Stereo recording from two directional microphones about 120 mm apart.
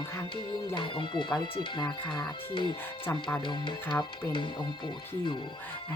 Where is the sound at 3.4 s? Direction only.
40° left (ahead or behind).